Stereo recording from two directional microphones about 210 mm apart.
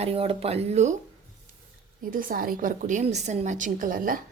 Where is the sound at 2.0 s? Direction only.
40° right (ahead or behind).